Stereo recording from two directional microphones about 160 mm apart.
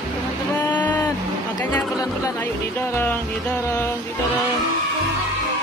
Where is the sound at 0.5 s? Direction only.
10° left (ahead or behind).